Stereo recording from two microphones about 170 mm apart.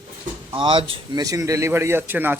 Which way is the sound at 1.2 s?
20° right (ahead or behind).